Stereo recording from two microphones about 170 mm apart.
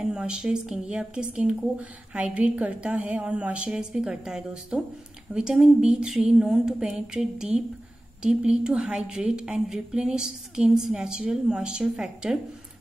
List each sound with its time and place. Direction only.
0.0 s a woman's voice: 5° right (ahead or behind)